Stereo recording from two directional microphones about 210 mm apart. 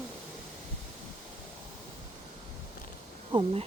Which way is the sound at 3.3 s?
25° right (ahead or behind).